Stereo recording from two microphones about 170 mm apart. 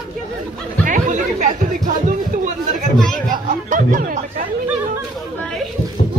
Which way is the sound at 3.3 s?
50° right (ahead or behind).